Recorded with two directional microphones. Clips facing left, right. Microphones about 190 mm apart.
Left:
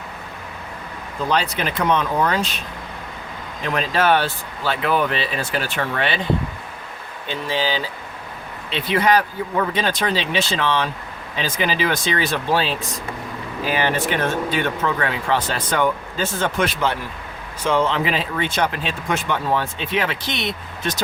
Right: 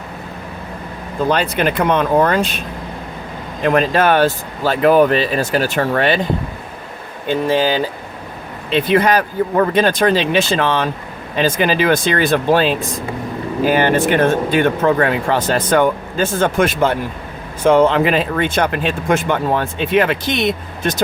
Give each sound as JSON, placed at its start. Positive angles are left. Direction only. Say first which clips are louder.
{"t": 1.3, "sound": "speech", "louder": "right 5 dB", "side_deg": -55}
{"t": 3.6, "sound": "speech", "louder": "right 7 dB", "side_deg": -50}
{"t": 7.3, "sound": "speech", "louder": "right 8 dB", "side_deg": -50}